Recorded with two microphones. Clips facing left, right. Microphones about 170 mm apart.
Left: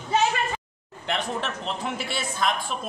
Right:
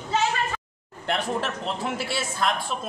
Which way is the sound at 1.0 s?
5° right (ahead or behind).